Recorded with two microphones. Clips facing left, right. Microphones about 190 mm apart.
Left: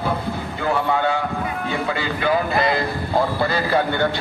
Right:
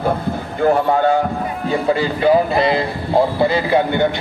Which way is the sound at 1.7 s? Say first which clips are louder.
Right 10 dB; 35° right (ahead or behind).